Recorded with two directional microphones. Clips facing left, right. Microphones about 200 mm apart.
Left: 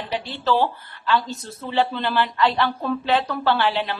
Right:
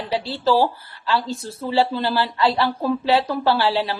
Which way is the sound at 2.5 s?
10° right (ahead or behind).